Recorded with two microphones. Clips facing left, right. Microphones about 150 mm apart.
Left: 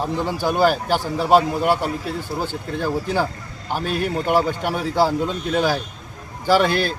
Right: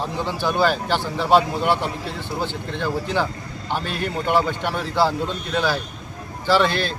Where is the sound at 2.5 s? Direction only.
45° left (ahead or behind).